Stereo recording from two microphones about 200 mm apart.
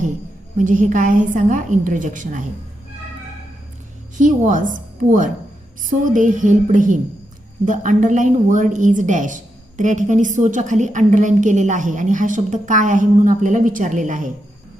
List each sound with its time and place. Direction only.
0.5 s a woman's voice: 40° right (ahead or behind)
4.2 s a woman's voice: 40° right (ahead or behind)